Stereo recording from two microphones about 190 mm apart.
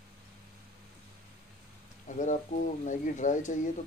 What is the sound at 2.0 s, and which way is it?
Speech, 40° left (ahead or behind).